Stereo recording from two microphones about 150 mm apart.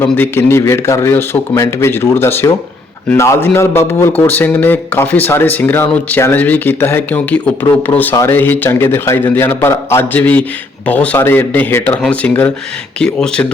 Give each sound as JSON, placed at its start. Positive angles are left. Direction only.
{"t": 0.0, "sound": "a man's voice", "side_deg": 15}